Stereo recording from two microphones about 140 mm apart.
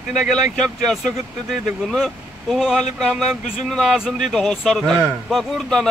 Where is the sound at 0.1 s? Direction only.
Centre (ahead or behind).